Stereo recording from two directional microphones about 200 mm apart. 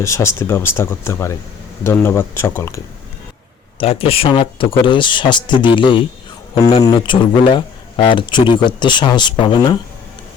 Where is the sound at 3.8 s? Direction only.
30° left (ahead or behind).